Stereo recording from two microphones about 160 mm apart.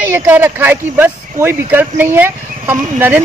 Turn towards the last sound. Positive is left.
turn(degrees=-10)  # may be behind; listen again after turning